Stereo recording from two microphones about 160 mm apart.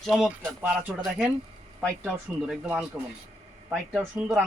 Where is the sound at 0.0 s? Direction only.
Centre (ahead or behind).